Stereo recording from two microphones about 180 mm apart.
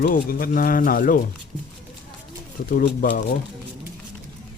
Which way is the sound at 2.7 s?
55° left (ahead or behind).